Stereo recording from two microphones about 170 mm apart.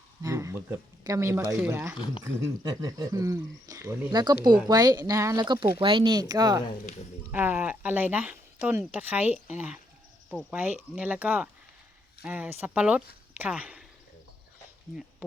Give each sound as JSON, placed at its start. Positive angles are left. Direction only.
{"t": 0.2, "sound": "speech", "side_deg": -20}
{"t": 7.3, "sound": "speech", "side_deg": -10}